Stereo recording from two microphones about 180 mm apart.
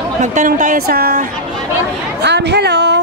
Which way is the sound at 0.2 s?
40° right (ahead or behind).